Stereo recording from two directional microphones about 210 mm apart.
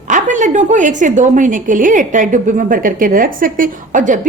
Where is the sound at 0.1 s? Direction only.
35° right (ahead or behind).